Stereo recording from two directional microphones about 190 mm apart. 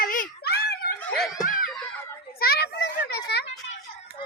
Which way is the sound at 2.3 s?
55° left (ahead or behind).